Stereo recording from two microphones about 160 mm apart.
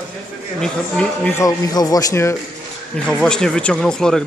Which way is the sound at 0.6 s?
5° left (ahead or behind).